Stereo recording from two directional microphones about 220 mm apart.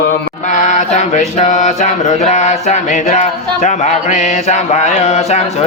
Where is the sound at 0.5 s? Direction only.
35° left (ahead or behind).